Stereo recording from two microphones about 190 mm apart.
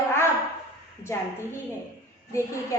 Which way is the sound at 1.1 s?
15° left (ahead or behind).